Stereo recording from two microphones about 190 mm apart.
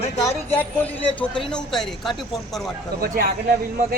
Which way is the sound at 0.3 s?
10° left (ahead or behind).